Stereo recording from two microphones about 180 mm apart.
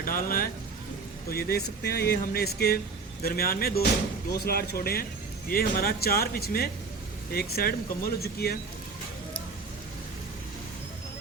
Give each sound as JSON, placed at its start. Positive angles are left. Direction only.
{"t": 0.0, "sound": "speech", "side_deg": 50}